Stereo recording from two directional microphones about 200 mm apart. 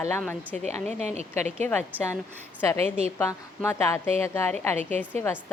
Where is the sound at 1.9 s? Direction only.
10° right (ahead or behind).